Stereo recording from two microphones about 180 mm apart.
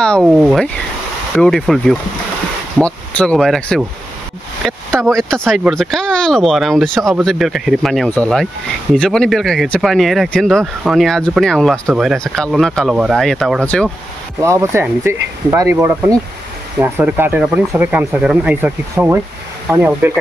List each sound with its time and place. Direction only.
0.2 s speech: 5° right (ahead or behind)
14.4 s speech: 15° right (ahead or behind)